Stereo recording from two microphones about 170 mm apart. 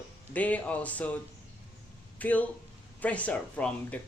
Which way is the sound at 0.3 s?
10° left (ahead or behind).